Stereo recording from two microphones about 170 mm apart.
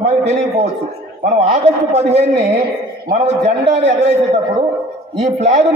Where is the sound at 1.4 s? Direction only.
40° right (ahead or behind).